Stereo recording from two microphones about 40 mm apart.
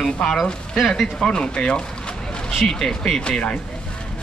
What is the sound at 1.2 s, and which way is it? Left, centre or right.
Speech, left.